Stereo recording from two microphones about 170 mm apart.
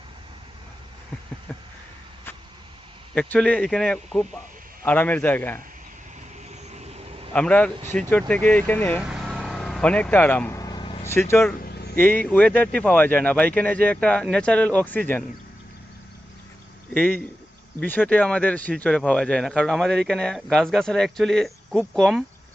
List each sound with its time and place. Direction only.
3.2 s speech: 5° left (ahead or behind)
7.3 s speech: 5° left (ahead or behind)
9.0 s vehicle: 5° right (ahead or behind)
10.6 s vehicle: 25° left (ahead or behind)
11.0 s speech: 15° left (ahead or behind)
16.9 s speech: 10° left (ahead or behind)